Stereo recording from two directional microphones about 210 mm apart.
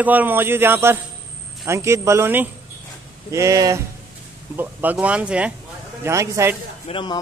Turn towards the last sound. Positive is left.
turn(degrees=25)  # may be behind; listen again after turning